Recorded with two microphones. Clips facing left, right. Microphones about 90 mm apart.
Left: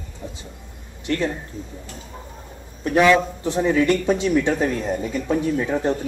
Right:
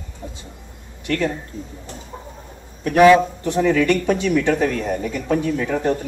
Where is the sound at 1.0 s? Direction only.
20° left (ahead or behind).